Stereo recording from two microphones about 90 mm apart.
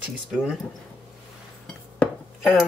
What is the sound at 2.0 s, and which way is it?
Cutlery, 15° left (ahead or behind).